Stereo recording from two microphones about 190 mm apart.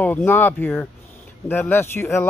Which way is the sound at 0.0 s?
10° left (ahead or behind).